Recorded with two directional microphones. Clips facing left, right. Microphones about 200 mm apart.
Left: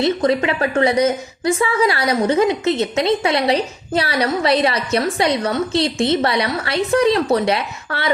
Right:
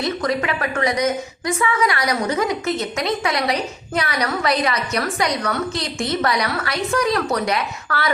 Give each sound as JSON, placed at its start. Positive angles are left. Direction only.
{"t": 0.0, "sound": "a woman's voice", "side_deg": 25}